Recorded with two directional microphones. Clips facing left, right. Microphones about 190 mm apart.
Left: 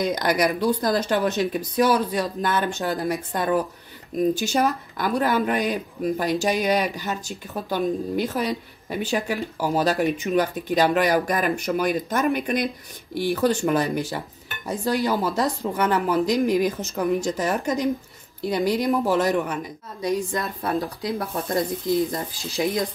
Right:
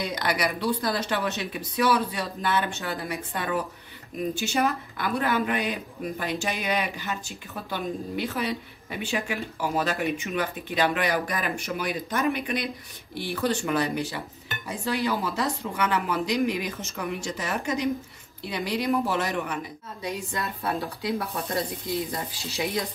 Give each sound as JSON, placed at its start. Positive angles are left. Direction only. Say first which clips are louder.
{"t": 0.1, "sound": "speech", "louder": "left 6 dB", "side_deg": 45}